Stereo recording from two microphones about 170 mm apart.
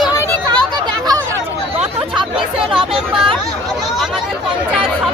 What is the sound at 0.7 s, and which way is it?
Chatter, 25° right (ahead or behind).